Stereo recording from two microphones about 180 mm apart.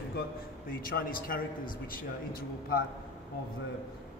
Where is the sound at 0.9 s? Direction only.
50° left (ahead or behind).